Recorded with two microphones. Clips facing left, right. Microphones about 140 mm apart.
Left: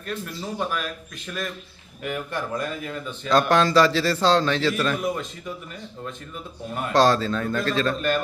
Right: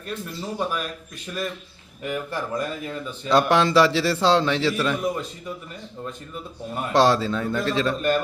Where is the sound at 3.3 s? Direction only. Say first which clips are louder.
Even; 20° right (ahead or behind); by 6.8 s 5° right (ahead or behind).